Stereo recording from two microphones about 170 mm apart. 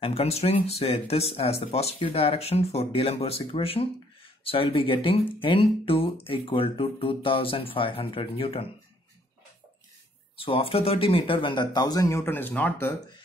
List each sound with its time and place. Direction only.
0.0 s speech: 35° left (ahead or behind)
10.3 s speech: 35° left (ahead or behind); by 12.9 s 10° left (ahead or behind)